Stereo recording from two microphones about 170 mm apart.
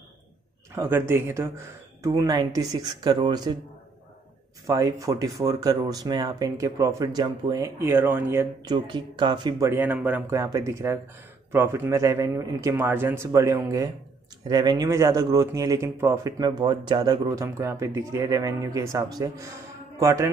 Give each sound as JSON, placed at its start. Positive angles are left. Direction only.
{"t": 0.7, "sound": "a man's voice", "side_deg": -15}
{"t": 4.6, "sound": "speech", "side_deg": -20}
{"t": 8.7, "sound": "speech", "side_deg": -30}
{"t": 9.7, "sound": "a man's voice", "side_deg": -10}